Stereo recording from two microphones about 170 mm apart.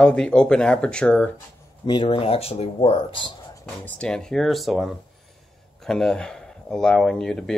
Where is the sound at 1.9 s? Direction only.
30° left (ahead or behind).